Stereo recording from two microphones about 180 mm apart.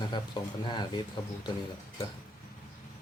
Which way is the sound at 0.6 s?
25° left (ahead or behind).